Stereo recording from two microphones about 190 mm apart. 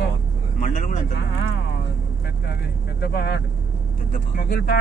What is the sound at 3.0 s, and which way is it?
Speech, 60° left (ahead or behind).